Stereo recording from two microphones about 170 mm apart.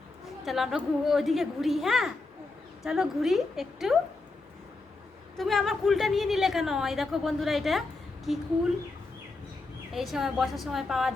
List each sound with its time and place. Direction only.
0.4 s a woman's voice: centre (ahead or behind)
5.4 s a woman's voice: centre (ahead or behind)
9.9 s a woman's voice: centre (ahead or behind)